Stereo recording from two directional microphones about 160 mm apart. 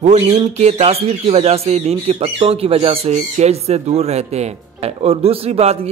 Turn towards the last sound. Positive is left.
turn(degrees=-40)  # may be behind; listen again after turning